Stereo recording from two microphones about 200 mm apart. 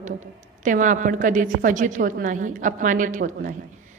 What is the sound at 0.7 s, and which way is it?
A woman's voice, 40° right (ahead or behind).